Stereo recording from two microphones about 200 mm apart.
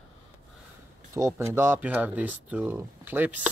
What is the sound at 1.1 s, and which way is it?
Speech, 15° right (ahead or behind).